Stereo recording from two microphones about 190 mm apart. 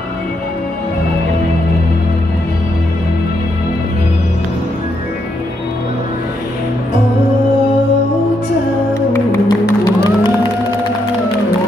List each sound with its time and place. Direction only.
9.1 s music: 20° left (ahead or behind)